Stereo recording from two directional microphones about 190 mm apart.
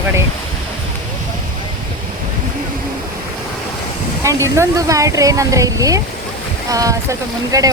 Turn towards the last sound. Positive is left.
turn(degrees=-15)  # may be behind; listen again after turning